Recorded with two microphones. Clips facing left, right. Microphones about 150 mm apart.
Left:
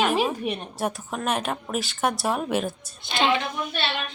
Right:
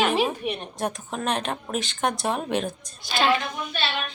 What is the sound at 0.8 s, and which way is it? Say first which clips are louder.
A woman's voice: even; 5° left (ahead or behind).